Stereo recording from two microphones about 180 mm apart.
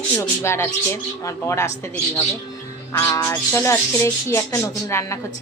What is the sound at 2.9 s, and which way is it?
A man's voice, 15° left (ahead or behind).